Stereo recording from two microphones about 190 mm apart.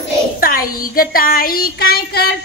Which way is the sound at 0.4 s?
50° left (ahead or behind).